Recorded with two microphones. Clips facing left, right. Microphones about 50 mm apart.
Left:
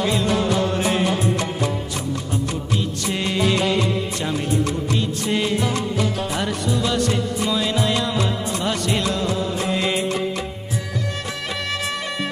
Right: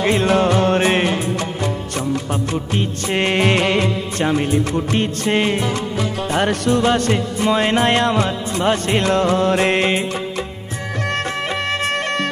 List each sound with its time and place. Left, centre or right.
0.0 s music: right
2.7 s music: right
6.3 s music: right
9.8 s music: right
11.4 s music: right